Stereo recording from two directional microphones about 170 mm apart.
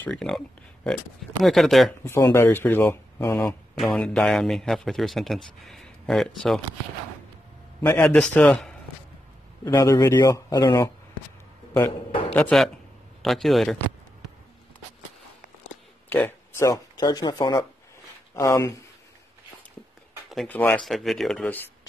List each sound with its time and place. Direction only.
0.0 s a man's voice: 5° left (ahead or behind)
1.4 s a man's voice: centre (ahead or behind)
2.0 s speech: 15° left (ahead or behind)
3.8 s a man's voice: 5° left (ahead or behind)
7.8 s speech: 10° left (ahead or behind)
9.7 s speech: 20° left (ahead or behind)
12.4 s a man's voice: 5° left (ahead or behind)
16.1 s speech: 10° left (ahead or behind)
20.2 s a man's voice: 5° left (ahead or behind)